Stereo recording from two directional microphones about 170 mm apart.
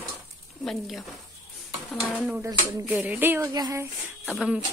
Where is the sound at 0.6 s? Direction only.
Centre (ahead or behind).